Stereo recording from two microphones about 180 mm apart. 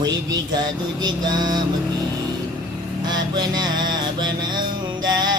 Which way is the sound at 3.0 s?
25° right (ahead or behind).